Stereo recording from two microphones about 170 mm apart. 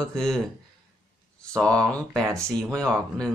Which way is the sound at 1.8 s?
5° left (ahead or behind).